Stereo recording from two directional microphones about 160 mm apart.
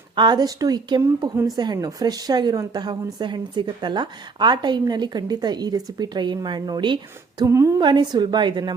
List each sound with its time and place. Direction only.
0.2 s a woman's voice: 25° right (ahead or behind)